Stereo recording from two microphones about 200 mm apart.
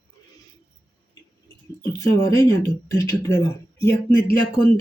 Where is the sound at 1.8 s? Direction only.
15° left (ahead or behind).